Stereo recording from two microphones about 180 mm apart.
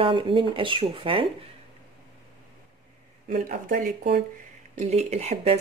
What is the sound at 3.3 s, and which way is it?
Speech, 45° right (ahead or behind).